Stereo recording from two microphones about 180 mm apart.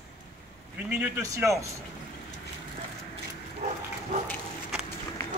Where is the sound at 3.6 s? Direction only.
45° right (ahead or behind).